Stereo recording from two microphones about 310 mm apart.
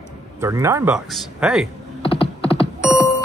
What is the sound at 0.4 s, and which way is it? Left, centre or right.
Speech, centre.